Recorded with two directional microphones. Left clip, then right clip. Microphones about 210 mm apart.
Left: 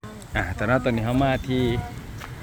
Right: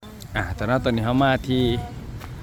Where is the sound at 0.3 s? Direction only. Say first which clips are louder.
Left 1 dB; 10° right (ahead or behind).